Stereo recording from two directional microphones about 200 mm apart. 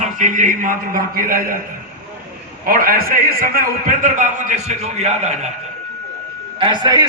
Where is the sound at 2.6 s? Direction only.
45° right (ahead or behind).